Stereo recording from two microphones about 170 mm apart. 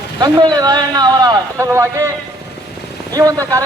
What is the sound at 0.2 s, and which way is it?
A man's voice, 25° right (ahead or behind).